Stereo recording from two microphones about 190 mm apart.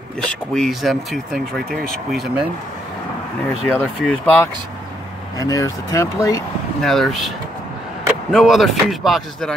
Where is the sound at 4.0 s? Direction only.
5° left (ahead or behind).